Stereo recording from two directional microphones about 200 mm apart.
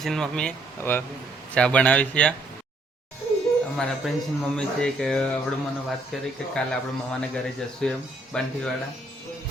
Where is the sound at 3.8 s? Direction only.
Centre (ahead or behind).